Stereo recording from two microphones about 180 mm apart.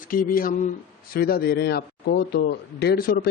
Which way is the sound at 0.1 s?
50° left (ahead or behind).